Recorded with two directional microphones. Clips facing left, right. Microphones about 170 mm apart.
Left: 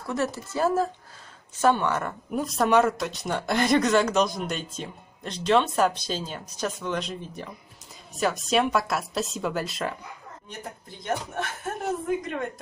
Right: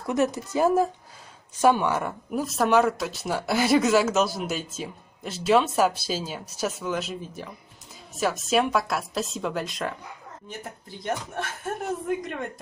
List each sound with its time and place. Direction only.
0.1 s a woman's voice: 15° right (ahead or behind); by 12.4 s centre (ahead or behind)